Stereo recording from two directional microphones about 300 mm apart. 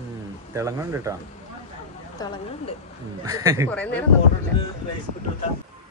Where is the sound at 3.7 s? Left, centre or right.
Centre.